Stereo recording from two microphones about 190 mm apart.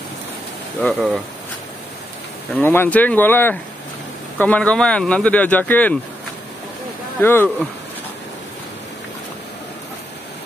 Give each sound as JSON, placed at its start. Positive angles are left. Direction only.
{"t": 0.9, "sound": "speech", "side_deg": -5}
{"t": 2.5, "sound": "speech", "side_deg": 10}
{"t": 7.2, "sound": "speech", "side_deg": 10}